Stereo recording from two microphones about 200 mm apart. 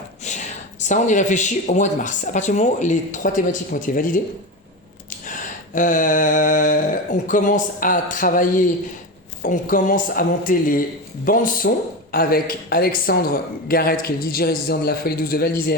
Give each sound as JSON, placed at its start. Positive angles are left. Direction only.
{"t": 0.3, "sound": "speech", "side_deg": 35}
{"t": 5.3, "sound": "a woman's voice", "side_deg": 40}